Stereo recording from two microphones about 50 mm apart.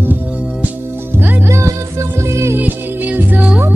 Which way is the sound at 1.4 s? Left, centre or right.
Right.